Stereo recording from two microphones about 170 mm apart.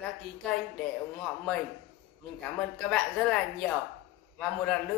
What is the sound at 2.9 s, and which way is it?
A woman's voice, 5° left (ahead or behind).